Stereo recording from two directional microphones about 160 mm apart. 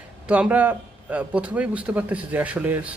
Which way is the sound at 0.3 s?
10° right (ahead or behind).